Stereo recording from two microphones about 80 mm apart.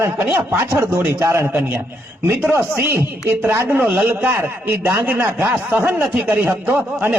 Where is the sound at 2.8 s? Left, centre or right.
Right.